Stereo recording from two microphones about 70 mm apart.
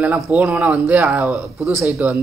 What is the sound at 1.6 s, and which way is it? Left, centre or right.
Speech, right.